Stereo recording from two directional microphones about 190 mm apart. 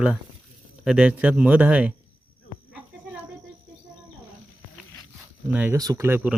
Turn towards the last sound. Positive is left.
turn(degrees=-10)  # may be behind; listen again after turning